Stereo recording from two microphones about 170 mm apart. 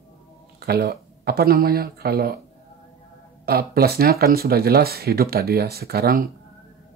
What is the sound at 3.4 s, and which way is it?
Speech, 65° right (ahead or behind).